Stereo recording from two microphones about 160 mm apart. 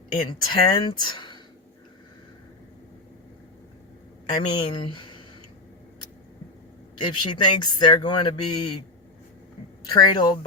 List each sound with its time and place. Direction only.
0.2 s speech: 30° left (ahead or behind)
4.3 s speech: 30° left (ahead or behind)
6.9 s speech: 30° left (ahead or behind)
9.9 s speech: 30° left (ahead or behind)